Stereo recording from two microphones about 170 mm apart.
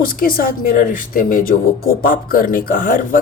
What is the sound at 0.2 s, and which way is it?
A woman's voice, 60° left (ahead or behind).